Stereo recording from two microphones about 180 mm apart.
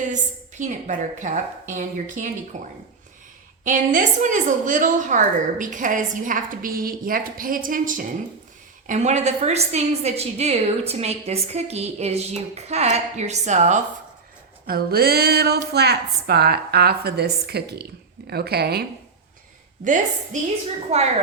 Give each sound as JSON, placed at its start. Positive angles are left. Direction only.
{"t": 0.0, "sound": "a woman's voice", "side_deg": -45}
{"t": 3.6, "sound": "a woman's voice", "side_deg": -45}
{"t": 14.7, "sound": "a woman's voice", "side_deg": -60}
{"t": 19.8, "sound": "a woman's voice", "side_deg": -45}
{"t": 20.9, "sound": "a woman's voice", "side_deg": -35}